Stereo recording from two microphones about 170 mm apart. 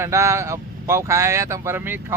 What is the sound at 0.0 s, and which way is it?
Speech, 15° right (ahead or behind).